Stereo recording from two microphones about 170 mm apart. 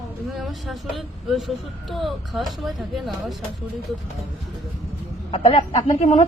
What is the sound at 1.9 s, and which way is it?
Speech, centre (ahead or behind).